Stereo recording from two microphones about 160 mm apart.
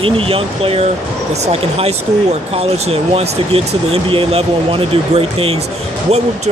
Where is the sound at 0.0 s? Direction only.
35° right (ahead or behind).